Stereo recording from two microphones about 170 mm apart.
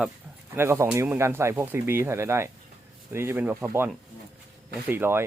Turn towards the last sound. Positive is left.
turn(degrees=-10)  # may be behind; listen again after turning